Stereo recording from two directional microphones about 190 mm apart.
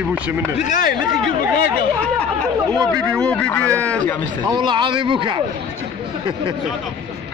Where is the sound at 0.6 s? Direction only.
40° left (ahead or behind).